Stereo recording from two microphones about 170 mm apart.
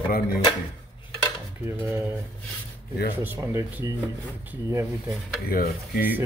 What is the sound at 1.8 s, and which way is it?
Speech, 15° right (ahead or behind).